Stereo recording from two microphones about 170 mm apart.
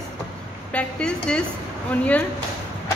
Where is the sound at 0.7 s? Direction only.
5° left (ahead or behind).